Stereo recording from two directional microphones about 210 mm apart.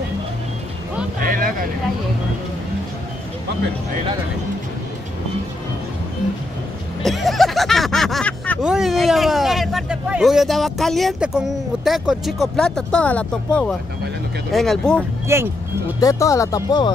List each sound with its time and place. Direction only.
1.2 s vehicle: 40° right (ahead or behind)
7.0 s a sound: centre (ahead or behind)
14.5 s speech: centre (ahead or behind)
15.3 s speech: 10° right (ahead or behind)
16.0 s speech: 15° left (ahead or behind)